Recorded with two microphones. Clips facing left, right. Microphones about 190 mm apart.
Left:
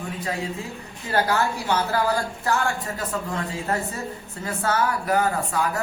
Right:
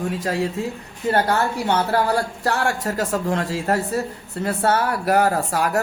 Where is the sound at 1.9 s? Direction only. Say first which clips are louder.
Right 3 dB; 70° right (ahead or behind).